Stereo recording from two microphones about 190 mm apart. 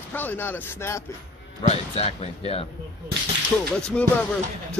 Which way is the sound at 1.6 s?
35° left (ahead or behind).